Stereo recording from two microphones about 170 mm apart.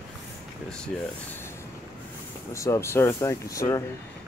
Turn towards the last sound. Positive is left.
turn(degrees=20)  # may be behind; listen again after turning